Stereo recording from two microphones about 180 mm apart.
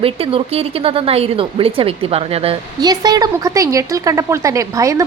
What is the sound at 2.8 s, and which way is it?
A woman's voice, 20° right (ahead or behind).